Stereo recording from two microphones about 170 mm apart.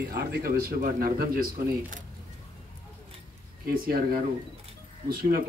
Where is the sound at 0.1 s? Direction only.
65° right (ahead or behind).